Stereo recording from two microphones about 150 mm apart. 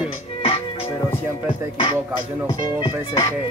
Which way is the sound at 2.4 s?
25° left (ahead or behind).